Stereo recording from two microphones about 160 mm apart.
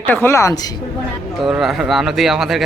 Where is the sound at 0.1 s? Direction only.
15° left (ahead or behind).